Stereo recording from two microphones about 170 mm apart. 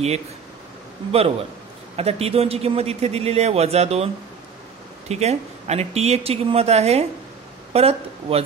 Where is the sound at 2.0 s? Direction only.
35° right (ahead or behind).